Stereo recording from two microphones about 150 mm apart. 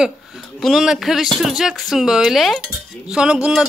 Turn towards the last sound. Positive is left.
turn(degrees=-5)  # may be behind; listen again after turning